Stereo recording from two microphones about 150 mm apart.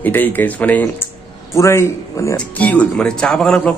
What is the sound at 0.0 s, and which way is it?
Speech, 10° left (ahead or behind).